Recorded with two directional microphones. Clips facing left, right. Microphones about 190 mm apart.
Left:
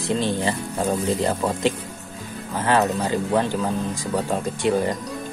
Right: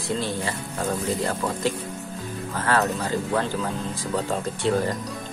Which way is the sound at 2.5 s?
20° left (ahead or behind).